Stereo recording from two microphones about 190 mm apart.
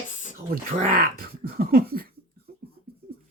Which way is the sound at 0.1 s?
40° left (ahead or behind).